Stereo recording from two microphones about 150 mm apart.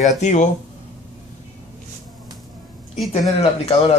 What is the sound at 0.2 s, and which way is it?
Speech, 55° left (ahead or behind).